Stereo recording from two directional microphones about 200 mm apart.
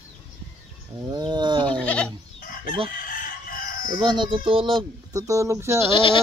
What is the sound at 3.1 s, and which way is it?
Chicken, 45° left (ahead or behind).